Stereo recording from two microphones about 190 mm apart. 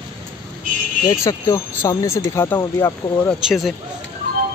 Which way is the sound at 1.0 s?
15° left (ahead or behind).